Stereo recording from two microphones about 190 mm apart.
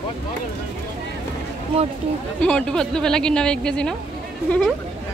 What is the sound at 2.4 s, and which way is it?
Speech, 5° left (ahead or behind).